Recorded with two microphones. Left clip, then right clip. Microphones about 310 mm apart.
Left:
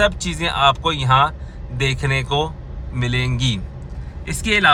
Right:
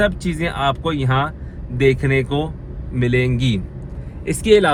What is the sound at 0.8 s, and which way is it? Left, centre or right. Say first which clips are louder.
Speech: left 5 dB; left.